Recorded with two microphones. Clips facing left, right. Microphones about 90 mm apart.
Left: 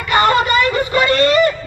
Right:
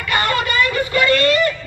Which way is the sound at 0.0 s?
25° left (ahead or behind).